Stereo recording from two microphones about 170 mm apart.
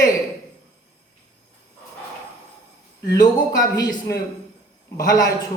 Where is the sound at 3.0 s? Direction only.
20° left (ahead or behind).